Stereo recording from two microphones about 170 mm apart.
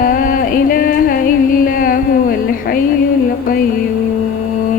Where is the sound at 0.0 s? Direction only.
55° left (ahead or behind).